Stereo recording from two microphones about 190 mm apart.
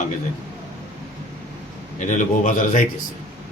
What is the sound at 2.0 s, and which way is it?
Speech, 40° left (ahead or behind).